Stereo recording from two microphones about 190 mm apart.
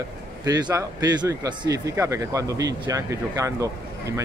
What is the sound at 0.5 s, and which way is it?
Speech, 20° right (ahead or behind).